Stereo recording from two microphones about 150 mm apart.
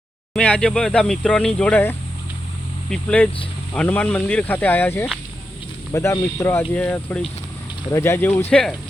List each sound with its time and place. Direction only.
0.3 s speech: 5° left (ahead or behind)